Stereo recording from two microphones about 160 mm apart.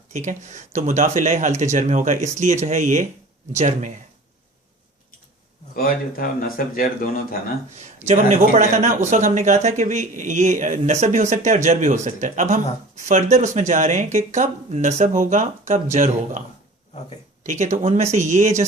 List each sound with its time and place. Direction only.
0.1 s speech: 50° right (ahead or behind)
5.7 s speech: 65° left (ahead or behind)
7.8 s speech: 50° right (ahead or behind)
17.4 s speech: 50° right (ahead or behind)